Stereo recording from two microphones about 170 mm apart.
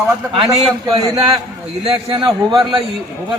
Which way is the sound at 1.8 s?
35° right (ahead or behind).